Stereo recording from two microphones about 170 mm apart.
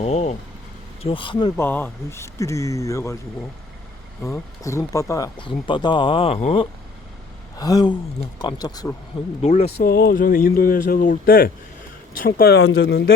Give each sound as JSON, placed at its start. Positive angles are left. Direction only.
{"t": 0.0, "sound": "speech", "side_deg": 40}
{"t": 1.0, "sound": "speech", "side_deg": 30}
{"t": 1.5, "sound": "speech", "side_deg": 10}
{"t": 4.2, "sound": "speech", "side_deg": 20}
{"t": 7.5, "sound": "a sound", "side_deg": 20}
{"t": 8.4, "sound": "speech", "side_deg": 25}
{"t": 9.4, "sound": "speech", "side_deg": 40}
{"t": 9.7, "sound": "speech", "side_deg": 65}